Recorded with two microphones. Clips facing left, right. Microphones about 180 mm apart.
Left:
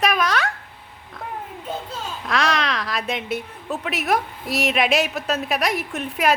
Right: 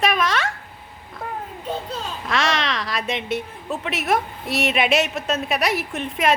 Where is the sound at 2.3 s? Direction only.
Centre (ahead or behind).